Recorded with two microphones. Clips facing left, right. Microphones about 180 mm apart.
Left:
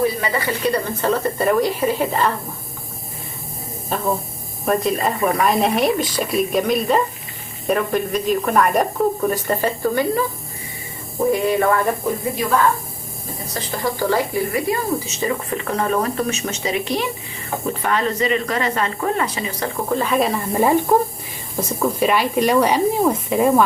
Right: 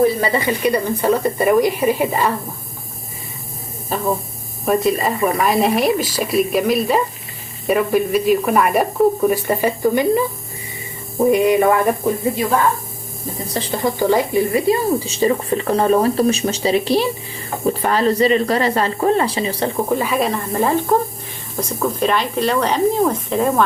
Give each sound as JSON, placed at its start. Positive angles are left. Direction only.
{"t": 0.2, "sound": "speech", "side_deg": -25}
{"t": 3.9, "sound": "speech", "side_deg": 0}
{"t": 11.3, "sound": "speech", "side_deg": -15}
{"t": 13.5, "sound": "speech", "side_deg": -30}
{"t": 19.9, "sound": "speech", "side_deg": -5}